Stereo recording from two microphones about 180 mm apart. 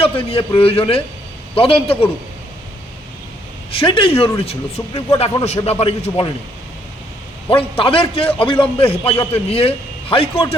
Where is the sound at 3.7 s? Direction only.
30° left (ahead or behind).